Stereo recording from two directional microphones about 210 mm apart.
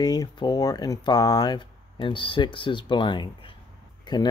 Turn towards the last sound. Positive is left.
turn(degrees=20)  # may be behind; listen again after turning